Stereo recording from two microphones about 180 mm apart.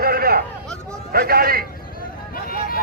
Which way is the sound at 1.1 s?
55° right (ahead or behind).